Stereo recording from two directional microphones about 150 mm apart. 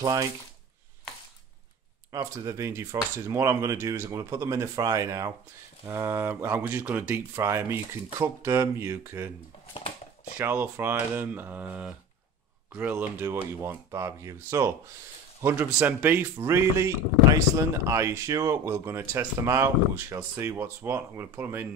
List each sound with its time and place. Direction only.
0.0 s speech: 25° right (ahead or behind)
2.1 s speech: 20° right (ahead or behind)
10.3 s speech: 15° right (ahead or behind)